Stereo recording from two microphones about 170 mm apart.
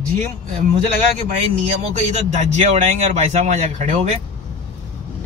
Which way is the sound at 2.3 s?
45° right (ahead or behind).